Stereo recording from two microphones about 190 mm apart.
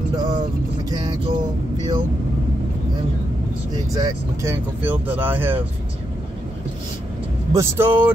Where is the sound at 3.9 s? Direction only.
20° right (ahead or behind).